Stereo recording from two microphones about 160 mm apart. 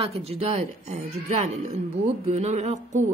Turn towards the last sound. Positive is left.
turn(degrees=-45)  # may be behind; listen again after turning